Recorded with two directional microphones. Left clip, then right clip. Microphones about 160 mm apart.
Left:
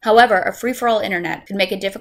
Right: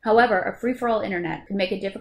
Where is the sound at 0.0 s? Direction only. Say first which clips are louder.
Left 6 dB; 15° left (ahead or behind).